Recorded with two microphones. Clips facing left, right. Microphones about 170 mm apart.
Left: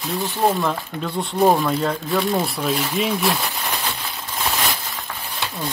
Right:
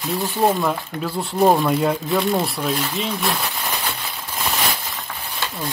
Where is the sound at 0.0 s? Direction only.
5° right (ahead or behind).